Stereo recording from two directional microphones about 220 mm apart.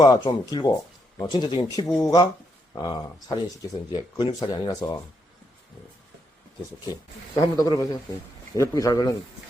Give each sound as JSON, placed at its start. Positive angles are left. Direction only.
{"t": 0.0, "sound": "speech", "side_deg": 20}
{"t": 7.5, "sound": "speech", "side_deg": 15}